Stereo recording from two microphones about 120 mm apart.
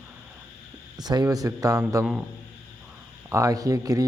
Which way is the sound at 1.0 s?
35° right (ahead or behind).